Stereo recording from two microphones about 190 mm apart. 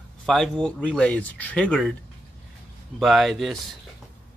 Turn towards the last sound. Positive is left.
turn(degrees=0)  # may be behind; listen again after turning